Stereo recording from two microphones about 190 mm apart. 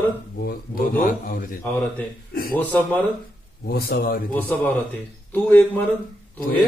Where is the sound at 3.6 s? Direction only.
55° left (ahead or behind).